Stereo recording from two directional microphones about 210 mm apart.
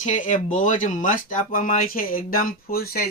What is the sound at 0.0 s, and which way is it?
Speech, 35° left (ahead or behind).